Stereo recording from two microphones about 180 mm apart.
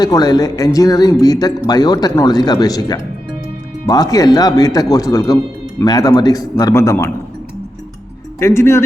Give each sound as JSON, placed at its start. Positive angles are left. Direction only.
{"t": 0.0, "sound": "speech", "side_deg": 20}
{"t": 8.4, "sound": "speech", "side_deg": 15}